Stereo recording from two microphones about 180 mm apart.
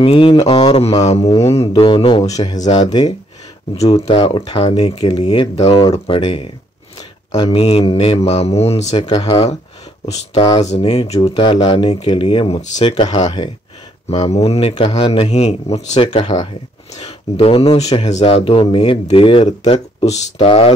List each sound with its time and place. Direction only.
0.0 s speech: 30° left (ahead or behind)
3.8 s speech: 35° left (ahead or behind)
8.8 s speech: 25° left (ahead or behind)
14.1 s speech: 35° left (ahead or behind)